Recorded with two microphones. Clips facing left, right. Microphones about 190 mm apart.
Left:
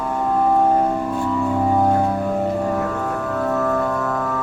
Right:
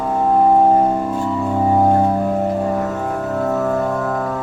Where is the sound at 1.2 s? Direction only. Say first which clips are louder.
Even; 20° right (ahead or behind).